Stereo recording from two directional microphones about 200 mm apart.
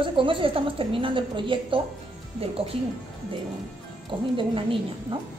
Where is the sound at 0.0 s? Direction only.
25° right (ahead or behind).